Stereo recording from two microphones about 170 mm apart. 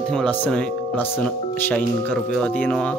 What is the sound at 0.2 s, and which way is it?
A man's voice, 5° left (ahead or behind).